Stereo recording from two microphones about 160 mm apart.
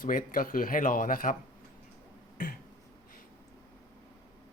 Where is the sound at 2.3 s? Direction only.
65° left (ahead or behind).